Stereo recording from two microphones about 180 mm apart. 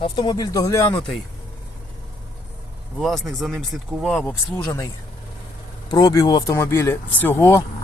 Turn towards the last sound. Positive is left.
turn(degrees=15)  # may be behind; listen again after turning